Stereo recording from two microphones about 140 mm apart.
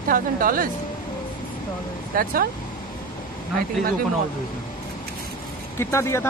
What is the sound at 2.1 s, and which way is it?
Speech, 90° right.